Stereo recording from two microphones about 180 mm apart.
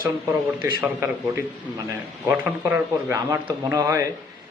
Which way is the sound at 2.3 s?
10° right (ahead or behind).